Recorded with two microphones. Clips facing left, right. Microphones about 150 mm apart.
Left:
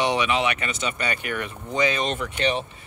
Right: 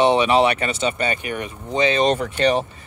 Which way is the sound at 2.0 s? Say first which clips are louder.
Right 7 dB; 40° right (ahead or behind).